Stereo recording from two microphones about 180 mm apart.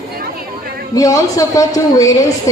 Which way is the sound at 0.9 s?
20° left (ahead or behind).